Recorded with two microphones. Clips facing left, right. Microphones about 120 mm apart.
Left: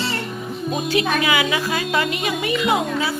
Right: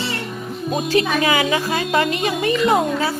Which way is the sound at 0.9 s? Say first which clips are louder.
Right 2 dB; 35° right (ahead or behind).